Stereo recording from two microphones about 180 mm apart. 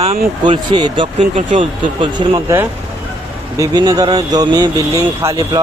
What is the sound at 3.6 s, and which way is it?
Speech, 20° right (ahead or behind).